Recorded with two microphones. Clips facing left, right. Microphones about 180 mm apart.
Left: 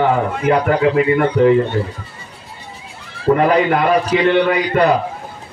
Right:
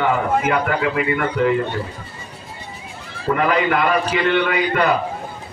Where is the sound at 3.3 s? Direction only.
35° left (ahead or behind).